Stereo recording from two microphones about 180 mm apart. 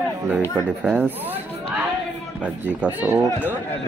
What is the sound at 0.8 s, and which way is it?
Speech, 10° right (ahead or behind).